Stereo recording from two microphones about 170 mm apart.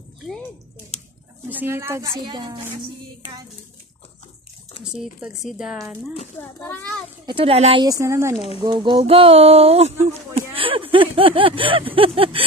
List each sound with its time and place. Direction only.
1.5 s speech: 10° right (ahead or behind)
2.2 s speech: 25° right (ahead or behind)
5.2 s a woman's voice: 5° right (ahead or behind)
6.6 s a child's voice: 10° left (ahead or behind)
7.2 s speech: 35° right (ahead or behind)
7.8 s speech: 20° right (ahead or behind)
8.6 s speech: 25° right (ahead or behind)